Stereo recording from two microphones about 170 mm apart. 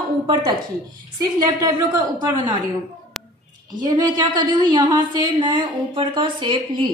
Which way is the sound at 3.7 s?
25° right (ahead or behind).